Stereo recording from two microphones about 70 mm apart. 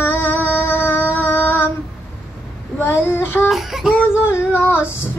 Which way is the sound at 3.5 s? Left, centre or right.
Centre.